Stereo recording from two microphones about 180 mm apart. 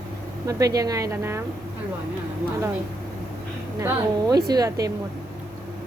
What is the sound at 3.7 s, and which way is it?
A woman's voice, 15° right (ahead or behind).